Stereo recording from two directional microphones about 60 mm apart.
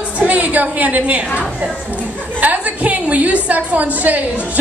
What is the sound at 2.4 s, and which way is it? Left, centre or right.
A woman's voice, right.